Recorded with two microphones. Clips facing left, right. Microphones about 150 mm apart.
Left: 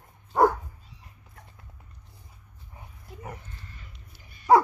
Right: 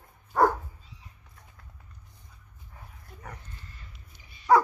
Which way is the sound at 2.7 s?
20° left (ahead or behind).